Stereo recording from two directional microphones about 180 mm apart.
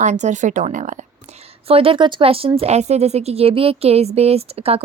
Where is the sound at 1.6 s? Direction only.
30° right (ahead or behind).